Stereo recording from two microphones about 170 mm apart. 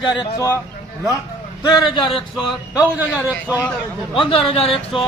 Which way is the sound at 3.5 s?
10° right (ahead or behind).